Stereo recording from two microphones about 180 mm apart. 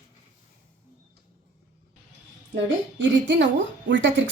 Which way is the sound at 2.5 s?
85° right.